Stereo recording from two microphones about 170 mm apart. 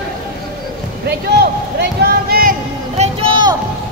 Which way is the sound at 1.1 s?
75° right (ahead or behind).